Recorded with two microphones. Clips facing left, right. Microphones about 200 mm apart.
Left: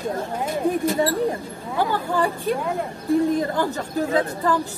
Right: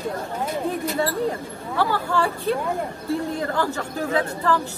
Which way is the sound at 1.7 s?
15° left (ahead or behind).